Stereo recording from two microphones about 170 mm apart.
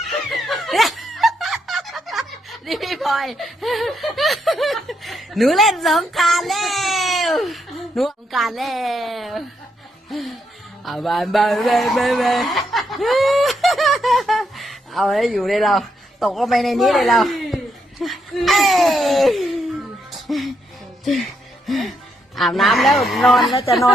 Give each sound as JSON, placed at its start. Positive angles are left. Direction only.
{"t": 0.3, "sound": "snicker", "side_deg": 0}
{"t": 2.6, "sound": "speech", "side_deg": 0}
{"t": 10.8, "sound": "music", "side_deg": 0}
{"t": 18.0, "sound": "a sound", "side_deg": 0}
{"t": 20.1, "sound": "music", "side_deg": 0}
{"t": 21.7, "sound": "music", "side_deg": 0}
{"t": 22.4, "sound": "speech", "side_deg": 0}